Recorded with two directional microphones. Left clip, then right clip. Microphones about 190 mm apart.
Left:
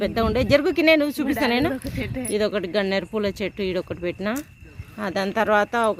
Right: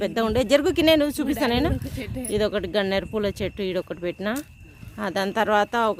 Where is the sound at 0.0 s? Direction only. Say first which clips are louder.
Left 1 dB; 5° right (ahead or behind).